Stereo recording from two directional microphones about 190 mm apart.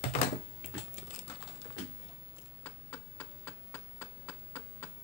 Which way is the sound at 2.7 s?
10° left (ahead or behind).